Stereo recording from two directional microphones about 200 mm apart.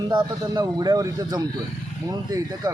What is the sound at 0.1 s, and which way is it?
A man's voice, 20° right (ahead or behind).